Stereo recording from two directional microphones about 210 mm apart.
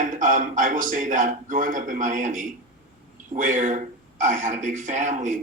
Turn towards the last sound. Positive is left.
turn(degrees=-35)  # may be behind; listen again after turning